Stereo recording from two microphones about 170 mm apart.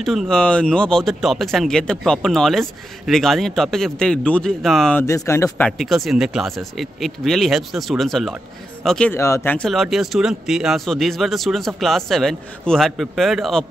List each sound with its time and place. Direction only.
0.0 s speech: centre (ahead or behind)
5.0 s speech: 20° left (ahead or behind)
5.7 s speech: centre (ahead or behind)
9.1 s speech: 15° left (ahead or behind)
9.7 s speech: centre (ahead or behind)